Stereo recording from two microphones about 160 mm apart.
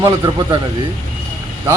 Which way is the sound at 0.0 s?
25° right (ahead or behind).